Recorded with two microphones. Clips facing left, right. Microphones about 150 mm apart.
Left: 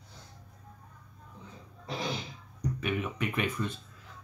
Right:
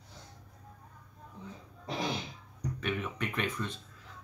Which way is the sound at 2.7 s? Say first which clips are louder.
Left 2 dB; 10° left (ahead or behind).